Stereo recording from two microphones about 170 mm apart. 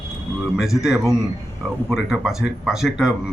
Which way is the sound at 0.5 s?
Centre (ahead or behind).